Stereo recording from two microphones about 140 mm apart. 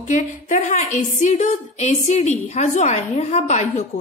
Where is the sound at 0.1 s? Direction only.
60° left (ahead or behind).